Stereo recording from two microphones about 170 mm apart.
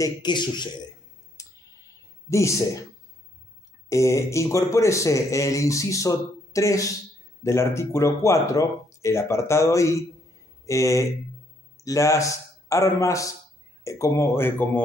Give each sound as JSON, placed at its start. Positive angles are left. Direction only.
{"t": 0.0, "sound": "speech", "side_deg": 25}
{"t": 1.4, "sound": "a sound", "side_deg": 20}
{"t": 2.2, "sound": "speech", "side_deg": 15}
{"t": 3.9, "sound": "a man's voice", "side_deg": 15}